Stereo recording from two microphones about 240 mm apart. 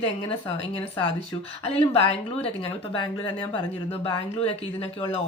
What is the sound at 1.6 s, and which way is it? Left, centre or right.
Speech, left.